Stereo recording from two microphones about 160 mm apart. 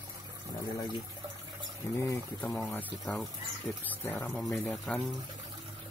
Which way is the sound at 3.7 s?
10° left (ahead or behind).